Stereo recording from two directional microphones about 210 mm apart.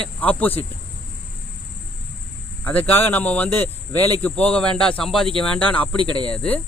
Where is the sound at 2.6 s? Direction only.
10° left (ahead or behind).